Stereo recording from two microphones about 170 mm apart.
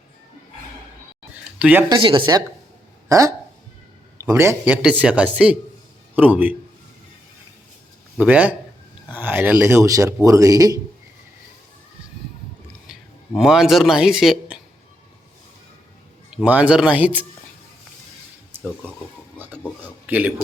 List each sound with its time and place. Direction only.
1.5 s speech: 10° right (ahead or behind)
1.9 s speech: 30° right (ahead or behind); by 6.6 s 10° right (ahead or behind)
8.2 s speech: 10° right (ahead or behind)
12.9 s speech: 5° right (ahead or behind)
16.3 s speech: 5° right (ahead or behind)
20.1 s a man's voice: 10° right (ahead or behind)